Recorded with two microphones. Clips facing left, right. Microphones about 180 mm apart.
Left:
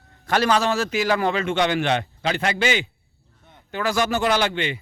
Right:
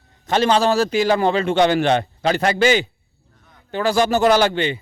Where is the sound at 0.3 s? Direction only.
25° right (ahead or behind).